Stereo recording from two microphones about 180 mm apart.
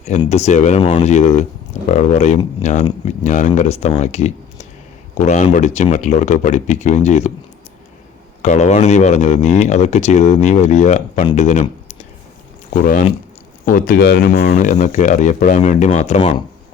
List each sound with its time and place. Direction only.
0.3 s speech: 40° left (ahead or behind)
8.4 s speech: 40° left (ahead or behind)
12.7 s speech: 50° left (ahead or behind)